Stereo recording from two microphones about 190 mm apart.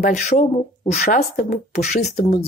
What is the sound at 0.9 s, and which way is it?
Speech, 50° left (ahead or behind).